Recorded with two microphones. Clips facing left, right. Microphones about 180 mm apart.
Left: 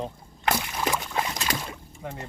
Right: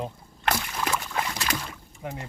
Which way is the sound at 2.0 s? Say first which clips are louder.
Right 1 dB; 20° right (ahead or behind).